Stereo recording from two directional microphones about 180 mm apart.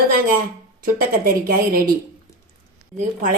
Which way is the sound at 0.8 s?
55° right (ahead or behind).